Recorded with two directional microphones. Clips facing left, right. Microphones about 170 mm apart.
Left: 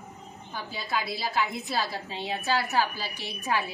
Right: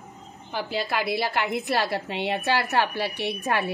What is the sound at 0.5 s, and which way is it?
A woman's voice, 75° right (ahead or behind).